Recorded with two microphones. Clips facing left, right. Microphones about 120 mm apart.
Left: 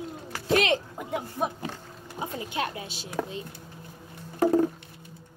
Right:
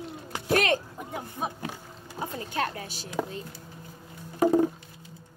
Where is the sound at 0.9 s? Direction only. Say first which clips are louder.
Left 4 dB; 90° left.